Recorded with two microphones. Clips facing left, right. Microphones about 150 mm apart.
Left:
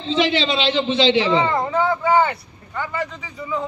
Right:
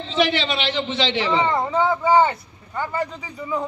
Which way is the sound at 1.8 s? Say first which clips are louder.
Right 1 dB; 25° right (ahead or behind).